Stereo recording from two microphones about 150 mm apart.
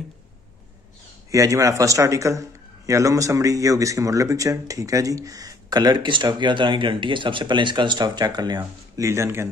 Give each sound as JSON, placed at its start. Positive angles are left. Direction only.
{"t": 1.3, "sound": "speech", "side_deg": -20}